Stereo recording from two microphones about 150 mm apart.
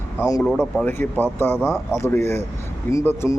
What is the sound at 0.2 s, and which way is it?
Speech, 20° left (ahead or behind).